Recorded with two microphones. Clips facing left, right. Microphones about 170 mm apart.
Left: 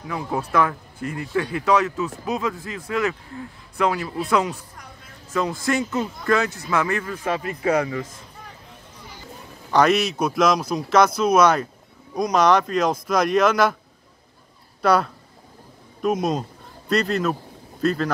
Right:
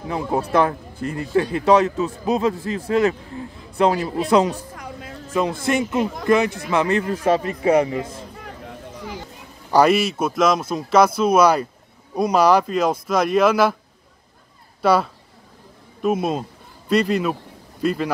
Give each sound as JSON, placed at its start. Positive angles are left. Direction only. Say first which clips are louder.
{"t": 0.1, "sound": "a man's voice", "louder": "right 3 dB", "side_deg": -30}
{"t": 4.7, "sound": "a sound", "louder": "right 10 dB", "side_deg": -90}
{"t": 5.5, "sound": "a man's voice", "louder": "right 2 dB", "side_deg": -25}
{"t": 9.8, "sound": "speech", "louder": "right 2 dB", "side_deg": -5}
{"t": 14.8, "sound": "speech", "louder": "right 1 dB", "side_deg": -5}